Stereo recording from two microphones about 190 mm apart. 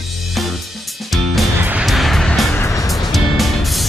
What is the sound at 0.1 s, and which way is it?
Music, centre (ahead or behind).